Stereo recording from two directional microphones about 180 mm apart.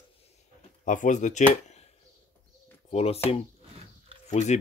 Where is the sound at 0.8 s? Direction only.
45° left (ahead or behind).